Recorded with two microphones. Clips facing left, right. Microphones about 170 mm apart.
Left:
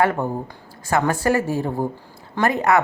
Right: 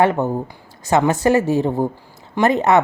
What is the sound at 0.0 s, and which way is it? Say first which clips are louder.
Speech: right 3 dB; 20° right (ahead or behind).